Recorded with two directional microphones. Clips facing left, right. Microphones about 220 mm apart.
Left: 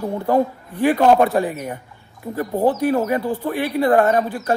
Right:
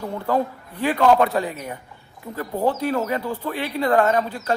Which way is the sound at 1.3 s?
50° left (ahead or behind).